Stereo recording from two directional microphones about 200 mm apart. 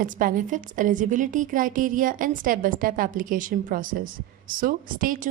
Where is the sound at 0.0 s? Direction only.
45° right (ahead or behind).